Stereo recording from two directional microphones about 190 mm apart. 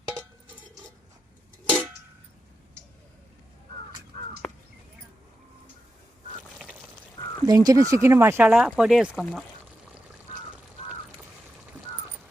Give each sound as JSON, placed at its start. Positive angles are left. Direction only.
{"t": 4.4, "sound": "crow", "side_deg": 5}
{"t": 7.4, "sound": "speech", "side_deg": -20}